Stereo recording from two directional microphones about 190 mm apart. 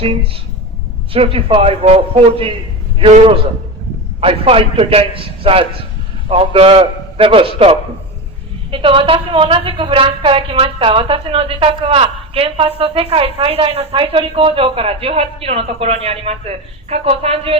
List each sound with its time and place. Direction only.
1.1 s a woman's voice: 30° right (ahead or behind)